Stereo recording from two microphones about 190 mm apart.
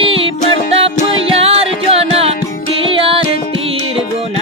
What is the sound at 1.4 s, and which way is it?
Music, 30° right (ahead or behind).